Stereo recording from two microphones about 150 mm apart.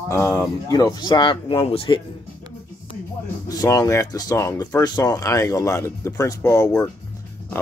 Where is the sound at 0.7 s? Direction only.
25° left (ahead or behind).